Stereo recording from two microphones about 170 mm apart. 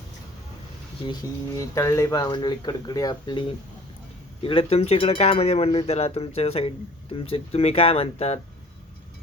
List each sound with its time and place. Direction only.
1.5 s speech: 20° left (ahead or behind)
4.4 s speech: 35° left (ahead or behind)